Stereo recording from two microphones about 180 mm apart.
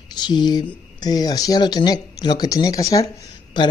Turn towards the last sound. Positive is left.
turn(degrees=20)  # may be behind; listen again after turning